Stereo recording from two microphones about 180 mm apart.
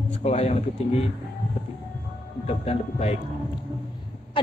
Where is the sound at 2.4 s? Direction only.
35° left (ahead or behind).